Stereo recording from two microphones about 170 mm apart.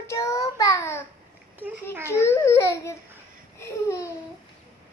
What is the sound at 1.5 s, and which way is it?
Speech, 10° right (ahead or behind).